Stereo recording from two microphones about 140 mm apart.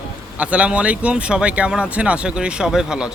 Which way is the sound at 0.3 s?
10° right (ahead or behind).